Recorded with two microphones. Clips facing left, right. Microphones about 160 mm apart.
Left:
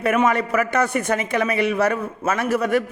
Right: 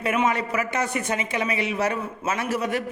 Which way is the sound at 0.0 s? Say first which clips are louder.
Left 4 dB; 50° left (ahead or behind).